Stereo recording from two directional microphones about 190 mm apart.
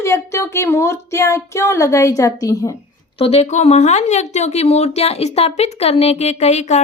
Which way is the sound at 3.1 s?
30° left (ahead or behind).